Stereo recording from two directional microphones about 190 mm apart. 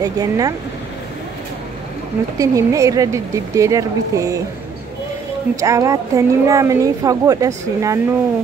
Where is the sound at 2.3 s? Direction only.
15° right (ahead or behind).